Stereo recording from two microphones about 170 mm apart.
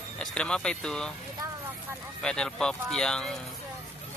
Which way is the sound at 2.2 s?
5° left (ahead or behind).